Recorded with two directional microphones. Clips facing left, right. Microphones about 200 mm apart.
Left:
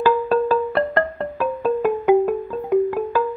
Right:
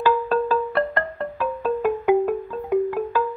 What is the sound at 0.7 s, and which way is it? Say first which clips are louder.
Music: left 3 dB; 20° left (ahead or behind).